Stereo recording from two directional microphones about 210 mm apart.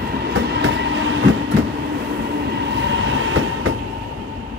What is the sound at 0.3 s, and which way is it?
Train, 60° right (ahead or behind).